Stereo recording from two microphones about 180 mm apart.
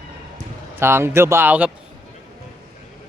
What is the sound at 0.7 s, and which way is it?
Speech, 15° right (ahead or behind).